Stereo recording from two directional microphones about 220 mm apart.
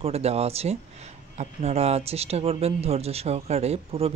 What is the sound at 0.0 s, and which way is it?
Speech, 30° right (ahead or behind).